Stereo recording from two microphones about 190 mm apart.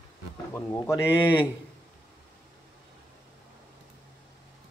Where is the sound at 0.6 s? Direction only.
15° left (ahead or behind).